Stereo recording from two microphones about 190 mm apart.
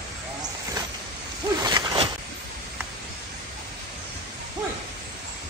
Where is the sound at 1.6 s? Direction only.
20° right (ahead or behind).